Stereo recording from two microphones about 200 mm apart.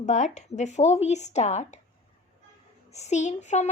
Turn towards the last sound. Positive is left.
turn(degrees=35)  # may be behind; listen again after turning